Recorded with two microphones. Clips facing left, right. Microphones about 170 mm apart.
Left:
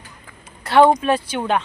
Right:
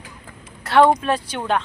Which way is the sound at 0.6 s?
Centre (ahead or behind).